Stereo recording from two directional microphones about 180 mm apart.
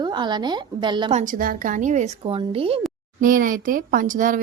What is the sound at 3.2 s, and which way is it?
A woman's voice, 50° right (ahead or behind).